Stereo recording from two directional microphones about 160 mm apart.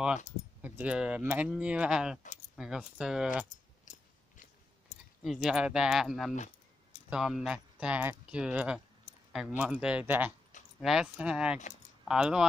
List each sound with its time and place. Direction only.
0.6 s speech: 10° right (ahead or behind)
3.4 s keys jangling: 50° left (ahead or behind)
4.9 s a sound: 50° left (ahead or behind)
5.2 s speech: centre (ahead or behind)